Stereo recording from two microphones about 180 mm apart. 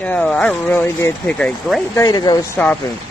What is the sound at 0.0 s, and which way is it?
Speech, 10° left (ahead or behind).